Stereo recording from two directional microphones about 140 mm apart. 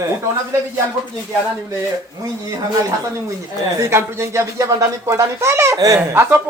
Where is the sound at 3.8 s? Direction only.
20° right (ahead or behind).